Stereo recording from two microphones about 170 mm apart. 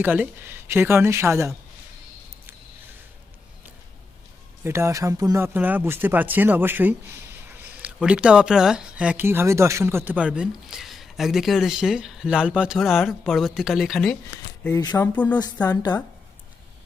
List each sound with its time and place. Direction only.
0.0 s speech: 10° right (ahead or behind)
4.6 s speech: 15° right (ahead or behind)
7.4 s a sound: 10° right (ahead or behind)
7.9 s speech: 5° right (ahead or behind)
14.7 s speech: 20° left (ahead or behind)